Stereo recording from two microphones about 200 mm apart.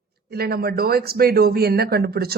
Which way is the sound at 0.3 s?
50° right (ahead or behind).